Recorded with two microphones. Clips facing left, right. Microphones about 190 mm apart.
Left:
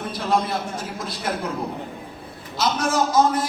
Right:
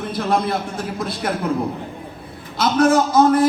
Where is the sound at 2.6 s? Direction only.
55° right (ahead or behind).